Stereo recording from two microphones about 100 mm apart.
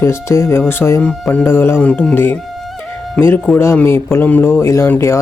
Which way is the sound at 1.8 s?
10° left (ahead or behind).